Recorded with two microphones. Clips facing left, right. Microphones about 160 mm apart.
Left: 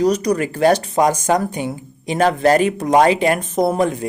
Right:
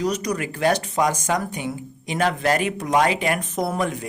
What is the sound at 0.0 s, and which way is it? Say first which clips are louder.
Speech: left 7 dB; 35° left (ahead or behind).